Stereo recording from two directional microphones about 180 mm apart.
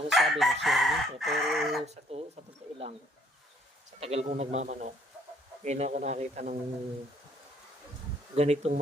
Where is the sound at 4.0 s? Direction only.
35° right (ahead or behind).